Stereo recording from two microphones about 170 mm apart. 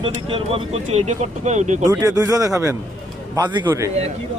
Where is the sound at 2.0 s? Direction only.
20° right (ahead or behind).